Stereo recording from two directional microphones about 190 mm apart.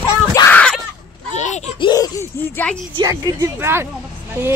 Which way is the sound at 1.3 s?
40° left (ahead or behind).